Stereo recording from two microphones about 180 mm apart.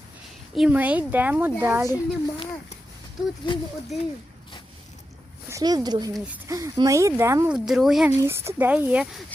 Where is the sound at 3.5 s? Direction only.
25° left (ahead or behind).